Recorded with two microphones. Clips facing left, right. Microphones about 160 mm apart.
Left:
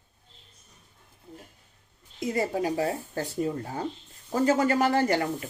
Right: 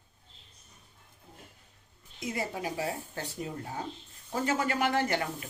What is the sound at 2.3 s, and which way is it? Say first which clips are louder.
Speech: left 8 dB; 40° left (ahead or behind).